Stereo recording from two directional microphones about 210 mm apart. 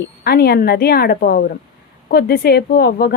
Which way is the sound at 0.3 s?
50° left (ahead or behind).